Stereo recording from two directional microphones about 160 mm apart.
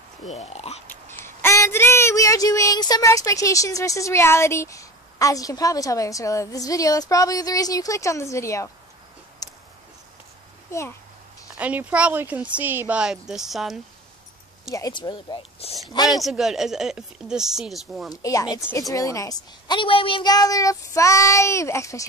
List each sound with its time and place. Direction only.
0.3 s speech: 40° left (ahead or behind)
0.8 s speech: 15° left (ahead or behind)
9.4 s a sound: 20° left (ahead or behind)
10.7 s a child's voice: 15° left (ahead or behind)
11.5 s speech: 10° right (ahead or behind)
14.7 s speech: 25° left (ahead or behind)
16.1 s speech: centre (ahead or behind)
18.1 s speech: 20° left (ahead or behind)